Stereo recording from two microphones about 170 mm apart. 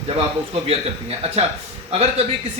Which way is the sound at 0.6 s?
35° right (ahead or behind).